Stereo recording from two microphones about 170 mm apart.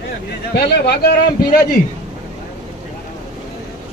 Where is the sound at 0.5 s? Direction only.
70° left (ahead or behind).